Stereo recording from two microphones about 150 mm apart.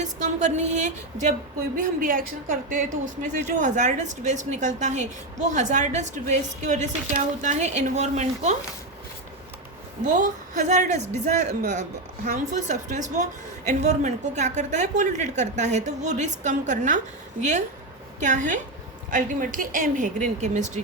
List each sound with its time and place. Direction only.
0.0 s a woman's voice: 50° right (ahead or behind)
1.7 s a woman's voice: 65° right (ahead or behind); by 8.5 s 50° right (ahead or behind)
10.1 s a woman's voice: 60° right (ahead or behind)
18.2 s a woman's voice: 60° right (ahead or behind)